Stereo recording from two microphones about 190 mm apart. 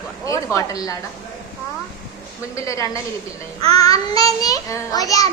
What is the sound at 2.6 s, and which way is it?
A child's voice, 15° left (ahead or behind).